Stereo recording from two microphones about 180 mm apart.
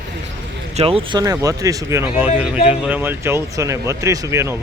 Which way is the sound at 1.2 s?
20° right (ahead or behind).